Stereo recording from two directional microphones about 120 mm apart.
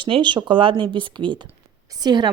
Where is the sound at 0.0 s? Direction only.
40° right (ahead or behind).